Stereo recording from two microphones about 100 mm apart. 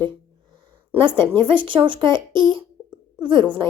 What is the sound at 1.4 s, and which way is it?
A woman's voice, 55° right (ahead or behind).